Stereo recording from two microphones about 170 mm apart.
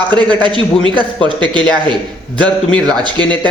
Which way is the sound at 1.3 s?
5° left (ahead or behind).